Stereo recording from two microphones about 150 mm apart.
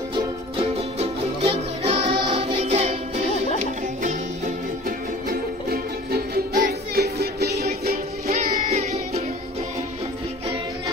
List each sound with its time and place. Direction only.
0.1 s music: 40° right (ahead or behind)
4.8 s music: 80° right
8.6 s music: 50° right (ahead or behind)